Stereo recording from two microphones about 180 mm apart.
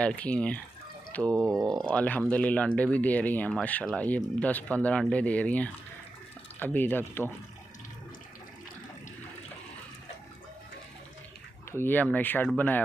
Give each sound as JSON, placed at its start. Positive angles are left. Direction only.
{"t": 0.0, "sound": "speech", "side_deg": 5}
{"t": 1.3, "sound": "speech", "side_deg": -15}
{"t": 1.9, "sound": "speech", "side_deg": 5}
{"t": 11.7, "sound": "speech", "side_deg": 10}